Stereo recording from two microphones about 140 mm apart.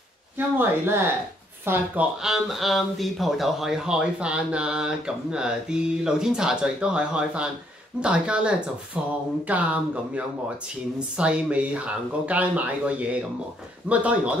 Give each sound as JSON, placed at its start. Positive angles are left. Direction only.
{"t": 0.6, "sound": "speech", "side_deg": -15}